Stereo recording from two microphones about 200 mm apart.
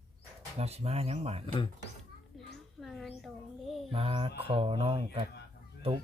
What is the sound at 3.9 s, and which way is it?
Speech, 30° right (ahead or behind).